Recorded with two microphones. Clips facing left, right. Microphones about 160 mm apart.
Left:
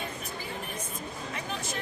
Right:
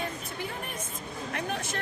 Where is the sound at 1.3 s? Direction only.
60° right (ahead or behind).